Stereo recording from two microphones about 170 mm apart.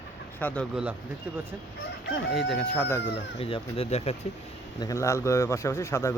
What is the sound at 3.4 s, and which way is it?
Speech, 35° left (ahead or behind).